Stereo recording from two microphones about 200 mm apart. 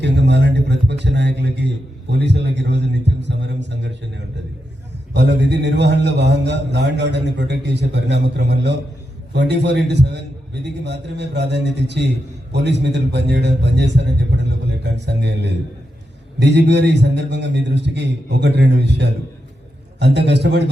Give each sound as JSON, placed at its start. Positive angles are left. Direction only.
{"t": 0.0, "sound": "a man's voice", "side_deg": -60}
{"t": 5.1, "sound": "a man's voice", "side_deg": -55}